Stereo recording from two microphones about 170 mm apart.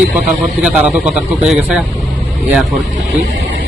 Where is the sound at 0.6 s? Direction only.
5° right (ahead or behind).